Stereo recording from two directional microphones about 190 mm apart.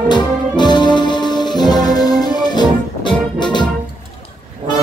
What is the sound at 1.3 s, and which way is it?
Music, 20° left (ahead or behind).